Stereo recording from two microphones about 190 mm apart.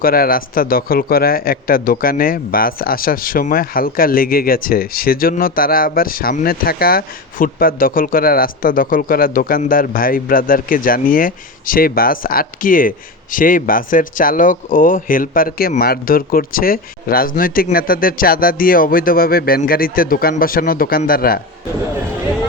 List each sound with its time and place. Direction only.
0.0 s a man's voice: 50° left (ahead or behind)